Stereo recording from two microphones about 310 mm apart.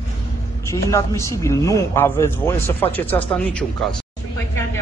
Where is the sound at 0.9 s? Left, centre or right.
Centre.